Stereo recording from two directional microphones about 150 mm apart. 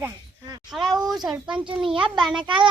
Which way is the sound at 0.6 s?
Centre (ahead or behind).